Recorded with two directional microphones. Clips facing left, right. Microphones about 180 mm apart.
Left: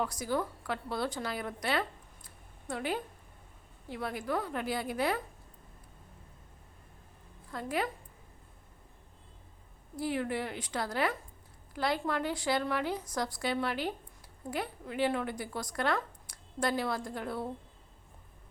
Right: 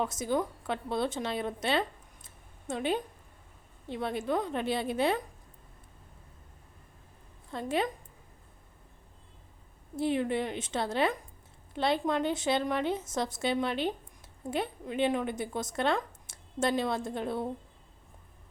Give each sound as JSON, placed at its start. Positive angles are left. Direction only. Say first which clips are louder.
{"t": 0.0, "sound": "a woman's voice", "louder": "right 3 dB", "side_deg": -20}
{"t": 7.5, "sound": "speech", "louder": "right 3 dB", "side_deg": -25}
{"t": 9.9, "sound": "speech", "louder": "right 4 dB", "side_deg": -25}